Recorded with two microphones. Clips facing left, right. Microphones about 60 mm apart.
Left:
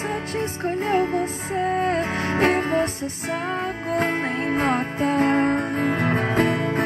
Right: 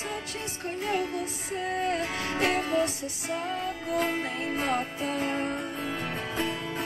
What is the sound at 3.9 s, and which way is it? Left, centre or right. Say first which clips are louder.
Music: left 5 dB; left.